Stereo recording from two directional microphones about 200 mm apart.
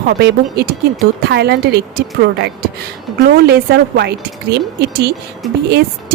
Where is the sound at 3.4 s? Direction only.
55° right (ahead or behind).